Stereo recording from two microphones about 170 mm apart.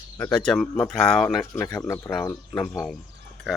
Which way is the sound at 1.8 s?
15° left (ahead or behind).